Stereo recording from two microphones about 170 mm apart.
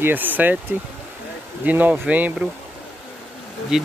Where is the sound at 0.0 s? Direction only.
10° right (ahead or behind).